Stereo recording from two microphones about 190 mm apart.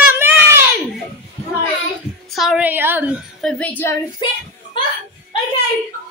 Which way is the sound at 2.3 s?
Centre (ahead or behind).